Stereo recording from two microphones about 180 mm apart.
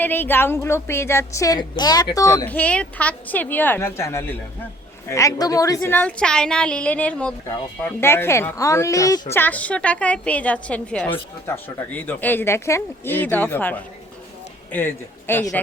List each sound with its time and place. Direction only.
0.0 s a woman's voice: 10° left (ahead or behind)